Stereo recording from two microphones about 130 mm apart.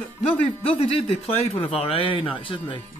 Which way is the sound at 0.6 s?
50° left (ahead or behind).